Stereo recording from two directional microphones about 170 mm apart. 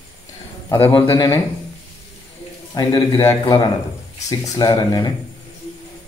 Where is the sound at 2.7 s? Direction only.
20° left (ahead or behind).